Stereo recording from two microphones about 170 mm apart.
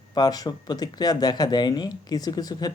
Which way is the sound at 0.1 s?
25° left (ahead or behind).